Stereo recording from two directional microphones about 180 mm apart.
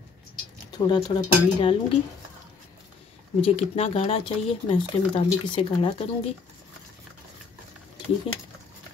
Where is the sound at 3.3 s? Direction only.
30° left (ahead or behind).